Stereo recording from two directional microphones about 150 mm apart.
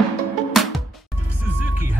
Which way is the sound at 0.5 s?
Centre (ahead or behind).